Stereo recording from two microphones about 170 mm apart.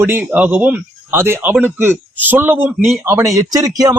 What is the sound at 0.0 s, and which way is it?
A man's voice, 10° right (ahead or behind).